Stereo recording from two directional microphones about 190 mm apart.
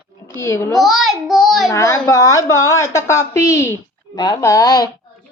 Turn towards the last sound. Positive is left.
turn(degrees=20)  # may be behind; listen again after turning